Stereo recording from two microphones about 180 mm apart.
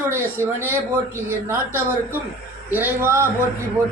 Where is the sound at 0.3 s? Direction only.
15° right (ahead or behind).